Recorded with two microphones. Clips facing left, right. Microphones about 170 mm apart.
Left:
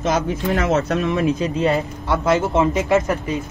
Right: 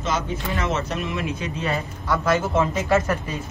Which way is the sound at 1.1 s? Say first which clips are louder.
Left 8 dB; 35° left (ahead or behind).